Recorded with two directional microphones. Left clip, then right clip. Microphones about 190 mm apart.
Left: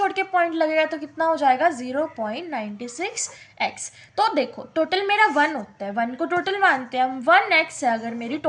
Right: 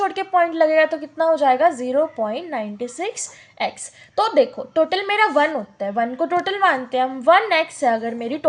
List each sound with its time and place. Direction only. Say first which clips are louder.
0.0 s a woman's voice: right 2 dB; 40° right (ahead or behind)